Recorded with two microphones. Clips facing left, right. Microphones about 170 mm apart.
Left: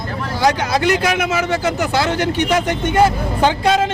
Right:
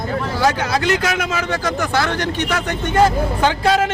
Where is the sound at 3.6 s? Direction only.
25° left (ahead or behind).